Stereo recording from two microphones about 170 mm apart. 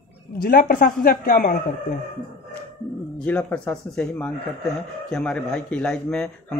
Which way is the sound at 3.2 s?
10° left (ahead or behind).